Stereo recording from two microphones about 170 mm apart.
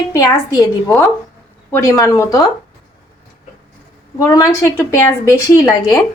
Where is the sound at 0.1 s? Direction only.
20° left (ahead or behind).